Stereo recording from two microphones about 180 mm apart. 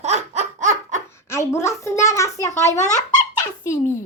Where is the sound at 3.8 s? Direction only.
15° left (ahead or behind).